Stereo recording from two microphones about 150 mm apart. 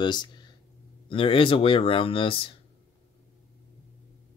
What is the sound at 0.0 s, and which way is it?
Speech, 30° left (ahead or behind).